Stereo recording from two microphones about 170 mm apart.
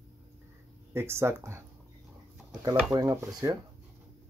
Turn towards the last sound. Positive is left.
turn(degrees=-20)  # may be behind; listen again after turning